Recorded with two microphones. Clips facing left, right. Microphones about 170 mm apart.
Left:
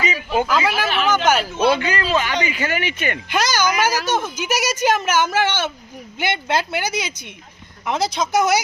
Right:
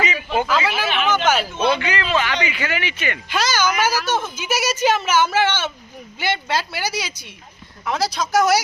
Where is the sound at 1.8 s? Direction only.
40° left (ahead or behind).